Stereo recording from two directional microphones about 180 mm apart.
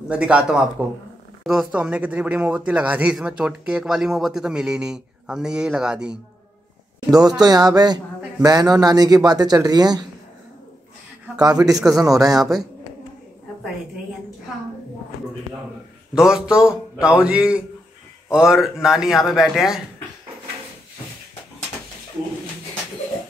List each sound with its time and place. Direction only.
0.1 s speech: 5° right (ahead or behind)
7.2 s a man's voice: 20° right (ahead or behind)
11.3 s speech: 20° right (ahead or behind)
16.2 s speech: 5° right (ahead or behind)